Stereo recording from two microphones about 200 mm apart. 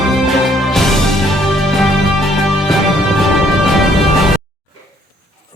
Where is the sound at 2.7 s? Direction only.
Centre (ahead or behind).